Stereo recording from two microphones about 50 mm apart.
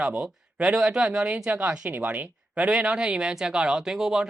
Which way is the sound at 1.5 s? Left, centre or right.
Right.